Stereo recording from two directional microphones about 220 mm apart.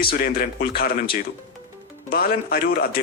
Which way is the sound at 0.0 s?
45° left (ahead or behind).